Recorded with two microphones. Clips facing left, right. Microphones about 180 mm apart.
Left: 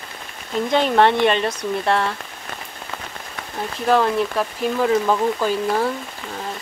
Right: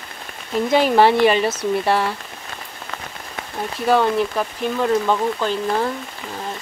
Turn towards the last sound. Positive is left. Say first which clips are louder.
# left 1 dB
turn(degrees=5)  # may be behind; listen again after turning